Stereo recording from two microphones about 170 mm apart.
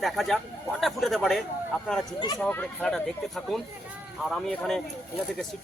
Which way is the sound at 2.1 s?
25° left (ahead or behind).